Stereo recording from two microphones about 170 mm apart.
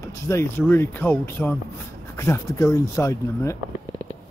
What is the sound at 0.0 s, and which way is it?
Speech, 15° left (ahead or behind).